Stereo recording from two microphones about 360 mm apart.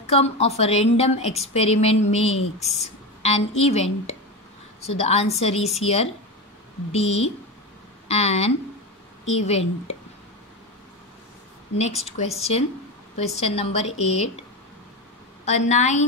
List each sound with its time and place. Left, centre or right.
0.0 s a woman's voice: centre
12.0 s a woman's voice: centre
15.4 s a woman's voice: centre